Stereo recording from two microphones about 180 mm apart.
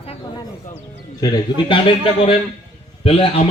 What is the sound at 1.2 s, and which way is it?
Speech, 25° left (ahead or behind).